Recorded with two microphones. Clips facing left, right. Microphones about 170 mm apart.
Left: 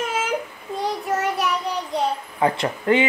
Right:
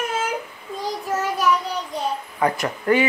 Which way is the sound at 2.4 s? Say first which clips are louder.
Left 1 dB; 25° left (ahead or behind).